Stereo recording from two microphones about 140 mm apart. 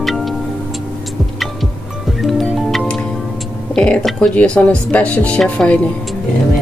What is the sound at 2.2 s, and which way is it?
Music, centre (ahead or behind).